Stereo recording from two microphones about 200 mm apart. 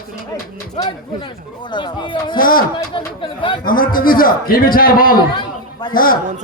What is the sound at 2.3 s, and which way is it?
Speech, 45° left (ahead or behind).